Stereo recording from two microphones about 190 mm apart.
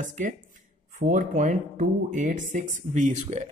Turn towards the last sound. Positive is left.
turn(degrees=-40)  # may be behind; listen again after turning